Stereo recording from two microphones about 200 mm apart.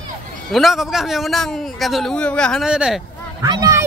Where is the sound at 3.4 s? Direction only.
20° right (ahead or behind).